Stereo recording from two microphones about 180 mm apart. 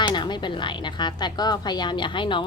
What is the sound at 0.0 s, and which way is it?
A woman's voice, 25° left (ahead or behind).